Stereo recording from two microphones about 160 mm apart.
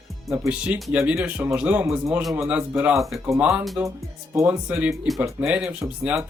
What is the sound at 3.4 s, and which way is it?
Music, 5° right (ahead or behind).